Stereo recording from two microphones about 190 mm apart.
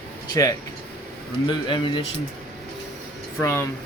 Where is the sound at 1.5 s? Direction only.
25° left (ahead or behind).